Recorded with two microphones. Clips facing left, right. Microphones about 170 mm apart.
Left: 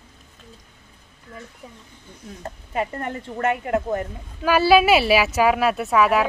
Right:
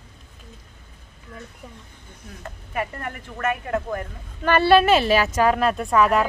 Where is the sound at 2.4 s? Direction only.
25° left (ahead or behind).